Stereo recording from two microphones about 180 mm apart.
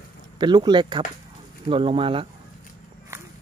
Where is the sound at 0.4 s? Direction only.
25° right (ahead or behind).